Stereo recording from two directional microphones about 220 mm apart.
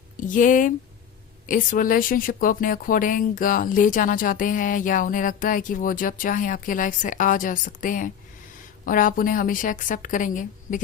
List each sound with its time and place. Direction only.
0.2 s a woman's voice: 35° left (ahead or behind)